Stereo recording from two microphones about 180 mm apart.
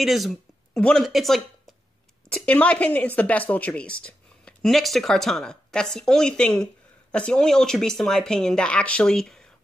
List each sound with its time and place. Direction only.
0.0 s speech: centre (ahead or behind)